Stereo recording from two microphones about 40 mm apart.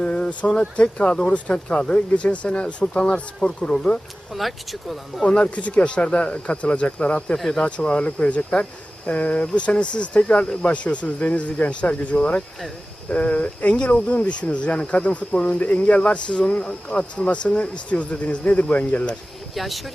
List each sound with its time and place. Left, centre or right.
0.0 s speech: left
4.4 s speech: centre
5.2 s speech: left
7.3 s speech: centre
7.6 s speech: left
19.5 s speech: centre